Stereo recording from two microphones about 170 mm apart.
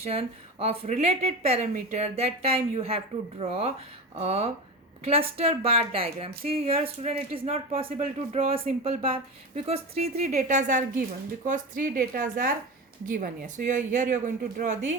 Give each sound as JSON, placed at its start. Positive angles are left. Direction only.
{"t": 0.0, "sound": "speech", "side_deg": -35}